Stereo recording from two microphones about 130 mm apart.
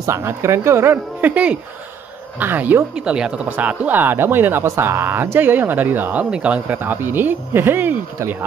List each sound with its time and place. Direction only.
0.0 s a woman's voice: 20° right (ahead or behind)